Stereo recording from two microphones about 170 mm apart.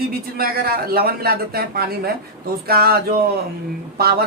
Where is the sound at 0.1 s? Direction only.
60° right (ahead or behind).